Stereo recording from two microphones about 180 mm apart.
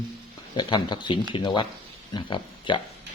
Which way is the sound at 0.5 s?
25° left (ahead or behind).